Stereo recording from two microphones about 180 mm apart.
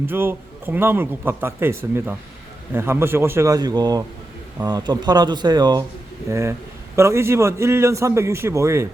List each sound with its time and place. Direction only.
0.0 s a man's voice: 10° right (ahead or behind)